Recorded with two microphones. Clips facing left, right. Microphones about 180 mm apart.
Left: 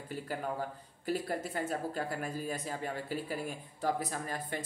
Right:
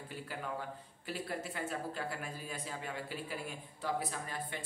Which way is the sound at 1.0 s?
40° left (ahead or behind).